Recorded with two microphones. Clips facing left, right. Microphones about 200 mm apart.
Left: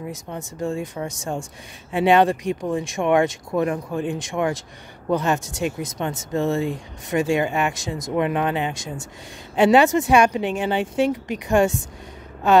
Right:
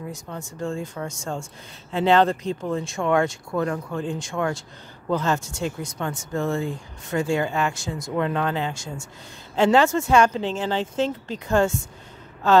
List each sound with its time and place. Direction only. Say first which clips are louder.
0.0 s speech: left 2 dB; 20° left (ahead or behind)